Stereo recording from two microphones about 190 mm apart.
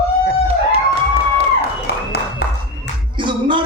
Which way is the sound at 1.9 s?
55° left (ahead or behind).